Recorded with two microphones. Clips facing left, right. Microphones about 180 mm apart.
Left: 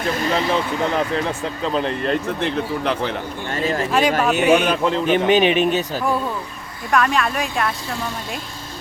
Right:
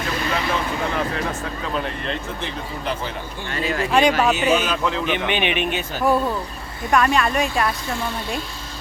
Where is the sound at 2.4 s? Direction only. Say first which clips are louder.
Left 7 dB; 65° left (ahead or behind).